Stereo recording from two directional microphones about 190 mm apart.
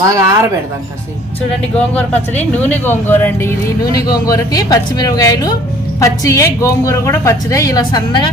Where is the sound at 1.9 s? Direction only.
10° left (ahead or behind).